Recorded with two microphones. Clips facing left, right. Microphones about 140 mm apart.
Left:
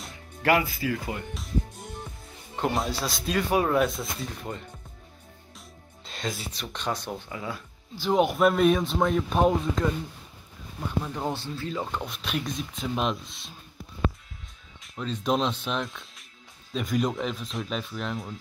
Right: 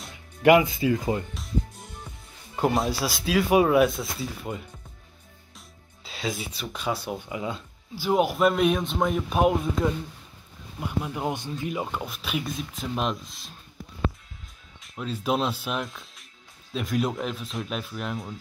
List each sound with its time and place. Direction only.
0.4 s speech: 20° right (ahead or behind)
1.3 s speech: centre (ahead or behind)
6.0 s speech: 5° right (ahead or behind)
7.9 s speech: 5° right (ahead or behind)
14.8 s speech: 5° right (ahead or behind)